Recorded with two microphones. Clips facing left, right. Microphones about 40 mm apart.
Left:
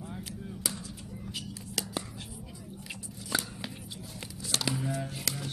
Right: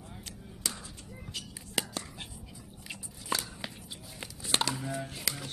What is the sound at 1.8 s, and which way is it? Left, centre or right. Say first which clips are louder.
Whispering: right 3 dB; right.